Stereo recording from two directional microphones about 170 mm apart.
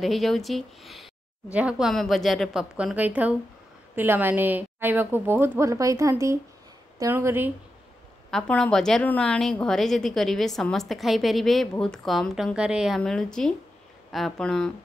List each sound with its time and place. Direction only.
0.0 s a woman's voice: centre (ahead or behind)
8.3 s a woman's voice: 5° left (ahead or behind)